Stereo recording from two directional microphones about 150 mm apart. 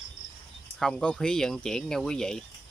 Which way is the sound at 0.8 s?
5° left (ahead or behind).